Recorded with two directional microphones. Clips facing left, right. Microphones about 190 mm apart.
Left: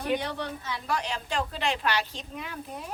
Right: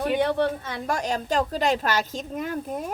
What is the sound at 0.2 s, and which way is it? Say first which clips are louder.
Speech: right 11 dB; 55° right (ahead or behind).